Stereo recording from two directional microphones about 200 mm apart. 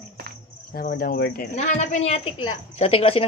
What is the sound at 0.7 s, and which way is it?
Speech, 45° left (ahead or behind).